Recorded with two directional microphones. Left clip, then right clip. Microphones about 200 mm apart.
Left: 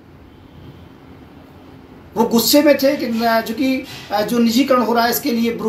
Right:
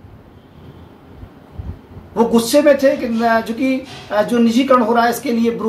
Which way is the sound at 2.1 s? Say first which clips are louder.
Right 1 dB; 5° right (ahead or behind).